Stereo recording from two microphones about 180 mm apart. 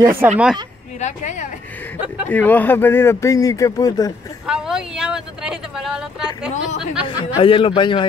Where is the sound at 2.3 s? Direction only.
10° left (ahead or behind).